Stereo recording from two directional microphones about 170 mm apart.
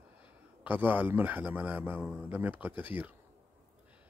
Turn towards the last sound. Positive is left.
turn(degrees=-10)  # may be behind; listen again after turning